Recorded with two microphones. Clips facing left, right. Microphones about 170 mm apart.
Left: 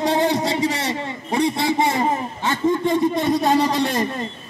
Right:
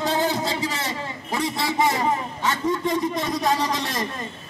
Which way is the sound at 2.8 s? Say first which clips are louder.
Left 5 dB; 30° left (ahead or behind).